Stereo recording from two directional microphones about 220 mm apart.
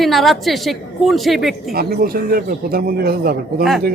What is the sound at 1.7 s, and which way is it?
Speech, 45° right (ahead or behind).